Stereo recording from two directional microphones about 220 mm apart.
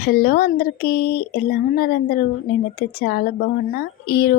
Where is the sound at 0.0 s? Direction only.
45° left (ahead or behind).